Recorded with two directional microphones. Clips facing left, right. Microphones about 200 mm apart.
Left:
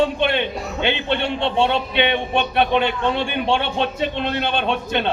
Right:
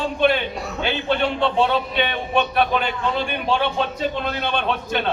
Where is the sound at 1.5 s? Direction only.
25° left (ahead or behind).